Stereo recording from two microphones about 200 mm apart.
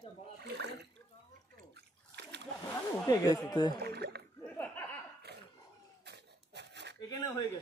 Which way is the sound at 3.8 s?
55° right (ahead or behind).